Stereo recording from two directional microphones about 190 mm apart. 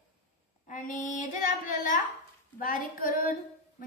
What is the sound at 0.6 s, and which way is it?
Speech, 40° left (ahead or behind).